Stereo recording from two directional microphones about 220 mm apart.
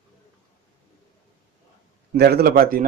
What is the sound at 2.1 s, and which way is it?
Speech, 45° right (ahead or behind).